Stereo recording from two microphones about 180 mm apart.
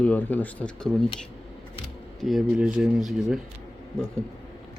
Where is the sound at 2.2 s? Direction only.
Centre (ahead or behind).